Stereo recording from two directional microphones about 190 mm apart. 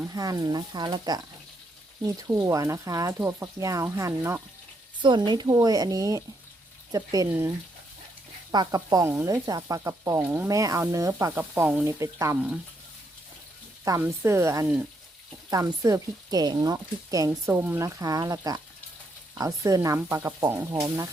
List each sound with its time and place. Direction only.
0.1 s speech: 20° right (ahead or behind)
4.9 s speech: 25° right (ahead or behind)
8.5 s speech: 20° right (ahead or behind)
13.8 s speech: 15° right (ahead or behind)